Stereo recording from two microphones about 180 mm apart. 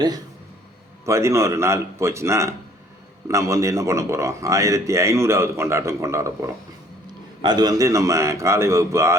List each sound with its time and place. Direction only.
1.0 s a man's voice: 15° right (ahead or behind)